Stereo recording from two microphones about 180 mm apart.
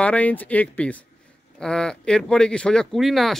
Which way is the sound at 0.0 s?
10° left (ahead or behind).